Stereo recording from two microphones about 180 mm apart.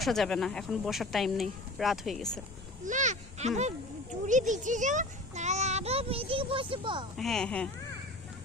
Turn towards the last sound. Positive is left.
turn(degrees=5)  # may be behind; listen again after turning